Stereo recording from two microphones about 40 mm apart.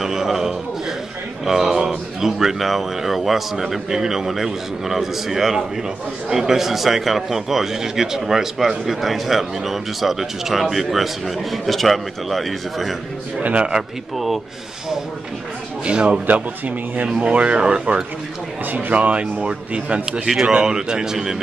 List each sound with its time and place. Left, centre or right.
0.0 s a sound: centre
1.4 s a man's voice: centre
13.4 s a man's voice: right
14.1 s a man's voice: centre
15.8 s speech: right
16.3 s speech: right
18.7 s a man's voice: right
20.1 s speech: centre